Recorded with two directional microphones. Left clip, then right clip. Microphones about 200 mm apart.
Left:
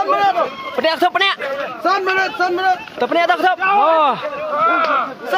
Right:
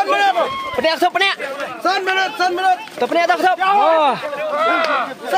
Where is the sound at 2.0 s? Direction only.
25° right (ahead or behind).